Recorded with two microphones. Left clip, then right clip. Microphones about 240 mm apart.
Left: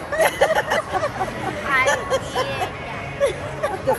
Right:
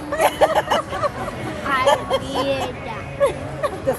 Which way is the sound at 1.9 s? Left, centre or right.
Centre.